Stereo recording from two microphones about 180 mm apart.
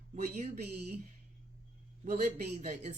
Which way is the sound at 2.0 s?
40° right (ahead or behind).